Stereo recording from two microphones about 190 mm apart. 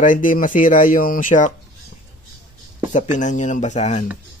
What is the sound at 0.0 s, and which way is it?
Speech, 45° left (ahead or behind).